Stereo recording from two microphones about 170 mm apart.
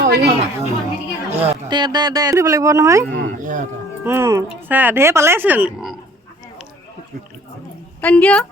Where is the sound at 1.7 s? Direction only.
25° right (ahead or behind); by 5.9 s 5° right (ahead or behind).